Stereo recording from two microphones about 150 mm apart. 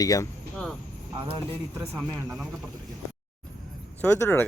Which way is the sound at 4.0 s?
15° left (ahead or behind).